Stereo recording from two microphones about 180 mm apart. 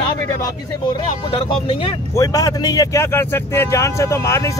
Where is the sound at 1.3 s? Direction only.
30° left (ahead or behind).